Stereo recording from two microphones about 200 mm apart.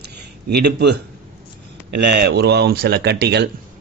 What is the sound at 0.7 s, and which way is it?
Speech, 55° right (ahead or behind).